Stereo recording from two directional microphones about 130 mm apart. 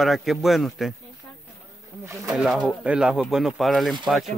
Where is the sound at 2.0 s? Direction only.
25° right (ahead or behind).